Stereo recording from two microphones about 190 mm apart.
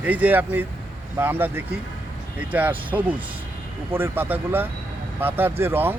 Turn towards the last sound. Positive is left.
turn(degrees=-10)  # may be behind; listen again after turning